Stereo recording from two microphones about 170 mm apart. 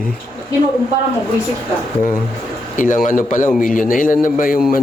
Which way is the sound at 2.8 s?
50° left (ahead or behind).